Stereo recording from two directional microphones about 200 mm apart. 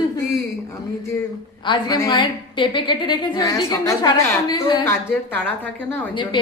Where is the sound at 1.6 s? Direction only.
20° left (ahead or behind).